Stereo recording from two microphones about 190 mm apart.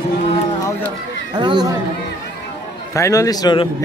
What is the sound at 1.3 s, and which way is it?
Speech, 20° right (ahead or behind).